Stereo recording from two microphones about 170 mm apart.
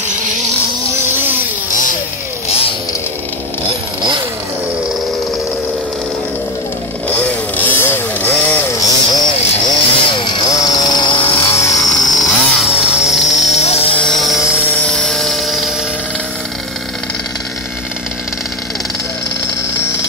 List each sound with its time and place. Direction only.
1.1 s vehicle: 10° right (ahead or behind)
1.7 s a sound: 50° left (ahead or behind)
2.4 s vehicle: 35° left (ahead or behind)
7.1 s chainsaw: 10° left (ahead or behind); by 11.2 s 25° left (ahead or behind)
11.5 s a sound: 20° left (ahead or behind)
11.9 s power tool: centre (ahead or behind)
13.5 s a sound: 40° left (ahead or behind)
14.0 s music: centre (ahead or behind)
14.6 s helicopter: 10° left (ahead or behind)